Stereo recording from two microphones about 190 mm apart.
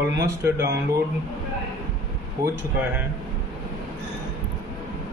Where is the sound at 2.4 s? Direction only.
20° right (ahead or behind).